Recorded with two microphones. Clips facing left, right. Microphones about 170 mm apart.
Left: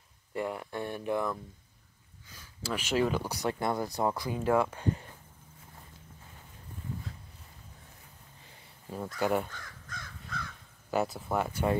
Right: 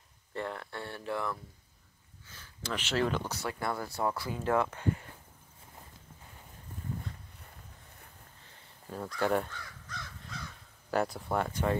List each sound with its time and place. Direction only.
0.3 s speech: 10° left (ahead or behind)
8.5 s a sound: 5° left (ahead or behind)
9.8 s crow: 50° left (ahead or behind)
10.9 s speech: centre (ahead or behind)